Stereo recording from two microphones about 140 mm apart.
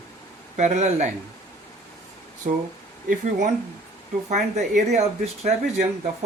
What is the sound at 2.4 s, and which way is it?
Speech, 65° right (ahead or behind).